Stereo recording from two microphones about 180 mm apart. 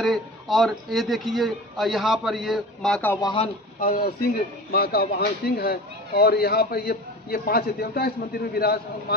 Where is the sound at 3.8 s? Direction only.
55° left (ahead or behind).